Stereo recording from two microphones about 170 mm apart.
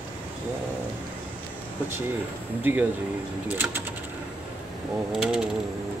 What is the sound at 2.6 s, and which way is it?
Speech, 10° right (ahead or behind).